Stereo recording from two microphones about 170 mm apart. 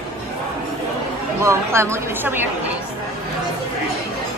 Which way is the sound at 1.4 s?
15° right (ahead or behind).